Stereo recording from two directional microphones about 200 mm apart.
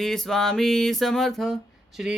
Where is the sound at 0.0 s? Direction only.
Centre (ahead or behind).